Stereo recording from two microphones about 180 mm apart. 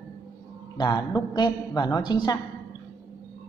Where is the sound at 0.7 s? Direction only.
20° left (ahead or behind).